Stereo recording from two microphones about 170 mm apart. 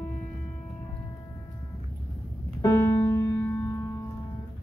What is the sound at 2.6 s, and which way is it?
Keyboard, 15° left (ahead or behind).